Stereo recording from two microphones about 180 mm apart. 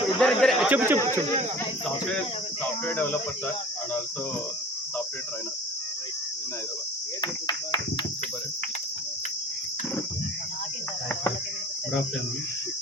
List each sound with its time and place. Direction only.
0.2 s speech: centre (ahead or behind)
0.7 s speech: 10° right (ahead or behind)
2.8 s speech: 10° left (ahead or behind)
7.2 s speech: 25° left (ahead or behind)